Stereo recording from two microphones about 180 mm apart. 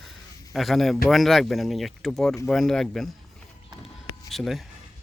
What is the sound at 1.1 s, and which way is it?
Speech, centre (ahead or behind).